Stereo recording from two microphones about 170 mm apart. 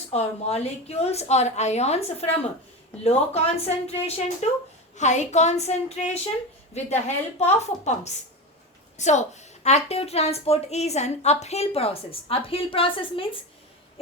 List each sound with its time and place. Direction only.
0.1 s a woman's voice: 40° left (ahead or behind)